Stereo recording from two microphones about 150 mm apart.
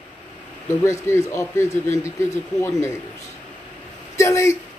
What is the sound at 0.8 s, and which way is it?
Speech, 20° left (ahead or behind).